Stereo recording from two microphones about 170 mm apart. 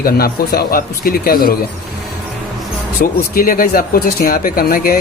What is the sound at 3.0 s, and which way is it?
Speech, 55° left (ahead or behind).